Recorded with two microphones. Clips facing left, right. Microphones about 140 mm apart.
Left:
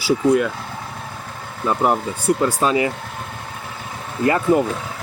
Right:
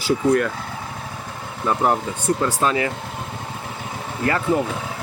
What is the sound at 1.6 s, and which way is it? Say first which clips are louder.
Speech: left 1 dB; 15° left (ahead or behind).